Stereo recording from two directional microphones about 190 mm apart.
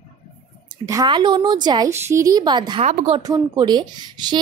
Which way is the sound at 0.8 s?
20° right (ahead or behind).